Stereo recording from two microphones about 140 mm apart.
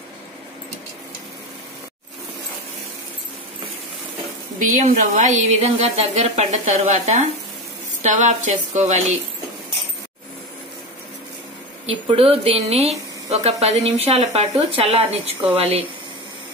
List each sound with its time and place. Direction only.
4.6 s a woman's voice: 65° right (ahead or behind)
11.8 s speech: 45° right (ahead or behind)